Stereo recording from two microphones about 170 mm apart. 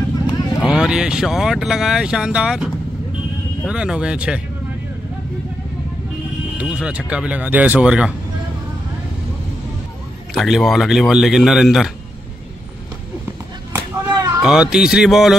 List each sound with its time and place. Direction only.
0.6 s speech: 5° right (ahead or behind)
6.6 s speech: 5° right (ahead or behind)
10.3 s speech: centre (ahead or behind)
13.7 s a sound: 15° right (ahead or behind)
14.4 s speech: 5° right (ahead or behind)